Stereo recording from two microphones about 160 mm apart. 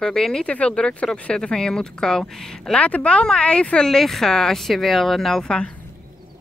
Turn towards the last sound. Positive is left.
turn(degrees=5)  # may be behind; listen again after turning